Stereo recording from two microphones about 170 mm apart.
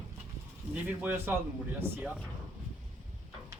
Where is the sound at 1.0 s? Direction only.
10° right (ahead or behind).